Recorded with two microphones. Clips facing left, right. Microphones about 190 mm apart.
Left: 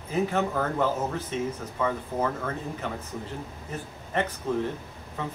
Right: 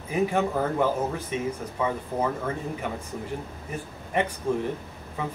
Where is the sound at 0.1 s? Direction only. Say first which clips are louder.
Right 2 dB; 15° right (ahead or behind).